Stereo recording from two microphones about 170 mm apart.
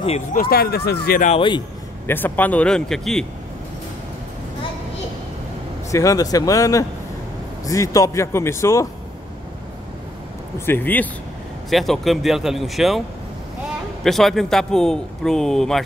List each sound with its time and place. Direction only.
0.3 s speech: 60° left (ahead or behind)
2.0 s a man's voice: 10° left (ahead or behind)
5.9 s a man's voice: 20° left (ahead or behind)
10.6 s a man's voice: 10° left (ahead or behind)
11.7 s a man's voice: centre (ahead or behind)
14.0 s a man's voice: centre (ahead or behind)